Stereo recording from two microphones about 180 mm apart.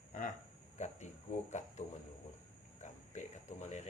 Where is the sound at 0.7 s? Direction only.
40° left (ahead or behind).